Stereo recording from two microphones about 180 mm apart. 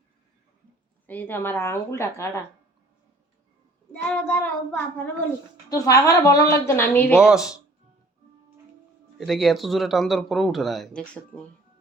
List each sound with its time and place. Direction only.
1.0 s a woman's voice: 10° left (ahead or behind)
4.1 s a woman's voice: 10° left (ahead or behind)
7.2 s speech: 5° right (ahead or behind)
9.1 s speech: centre (ahead or behind)